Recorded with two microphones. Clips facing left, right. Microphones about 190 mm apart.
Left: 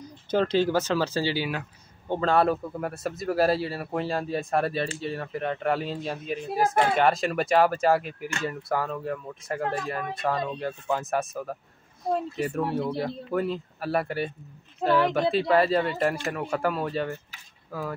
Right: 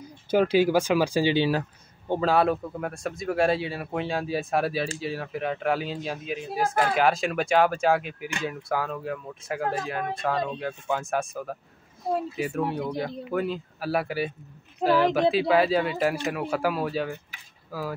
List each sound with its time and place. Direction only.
0.3 s speech: 10° right (ahead or behind)
1.4 s speech: 35° right (ahead or behind)
2.0 s speech: 5° right (ahead or behind)